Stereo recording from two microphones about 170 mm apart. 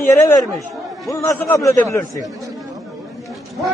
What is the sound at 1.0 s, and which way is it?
A man's voice, 15° left (ahead or behind).